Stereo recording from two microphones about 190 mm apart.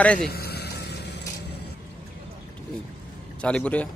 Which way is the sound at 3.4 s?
5° left (ahead or behind).